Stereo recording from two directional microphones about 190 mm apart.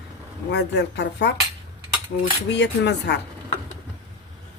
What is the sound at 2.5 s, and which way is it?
Speech, 65° left (ahead or behind).